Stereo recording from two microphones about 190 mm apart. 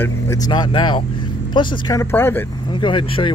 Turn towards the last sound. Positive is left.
turn(degrees=25)  # may be behind; listen again after turning